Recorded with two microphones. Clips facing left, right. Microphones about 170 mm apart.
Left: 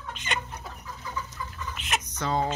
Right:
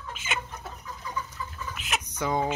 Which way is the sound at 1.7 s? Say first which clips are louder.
Left 2 dB; 5° right (ahead or behind).